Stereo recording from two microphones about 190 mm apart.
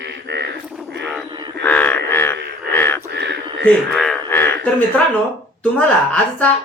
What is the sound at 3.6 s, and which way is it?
Frog, 5° left (ahead or behind).